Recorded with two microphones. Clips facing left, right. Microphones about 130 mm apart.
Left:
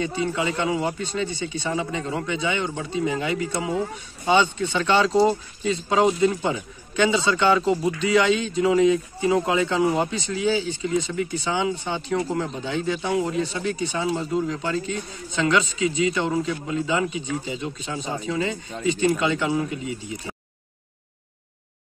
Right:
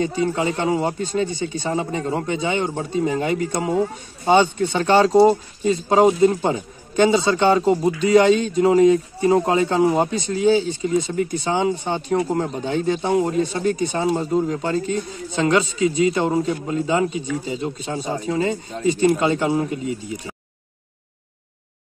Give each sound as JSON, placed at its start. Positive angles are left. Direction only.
{"t": 0.0, "sound": "speech", "side_deg": -45}
{"t": 5.6, "sound": "speech", "side_deg": -45}